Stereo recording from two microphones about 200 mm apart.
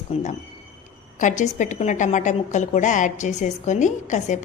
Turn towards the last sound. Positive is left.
turn(degrees=35)  # may be behind; listen again after turning